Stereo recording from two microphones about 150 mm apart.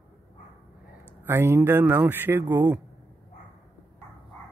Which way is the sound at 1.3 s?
15° right (ahead or behind).